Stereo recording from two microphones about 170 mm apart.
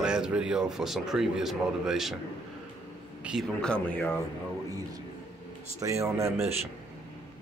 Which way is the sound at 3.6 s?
5° left (ahead or behind).